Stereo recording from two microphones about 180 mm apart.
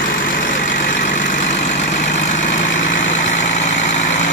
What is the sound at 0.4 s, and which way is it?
Vehicle, 50° left (ahead or behind).